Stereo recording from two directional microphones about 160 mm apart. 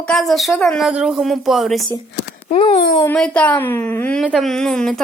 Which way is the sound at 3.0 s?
10° left (ahead or behind).